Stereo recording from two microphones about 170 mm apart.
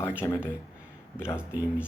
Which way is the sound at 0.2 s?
15° left (ahead or behind).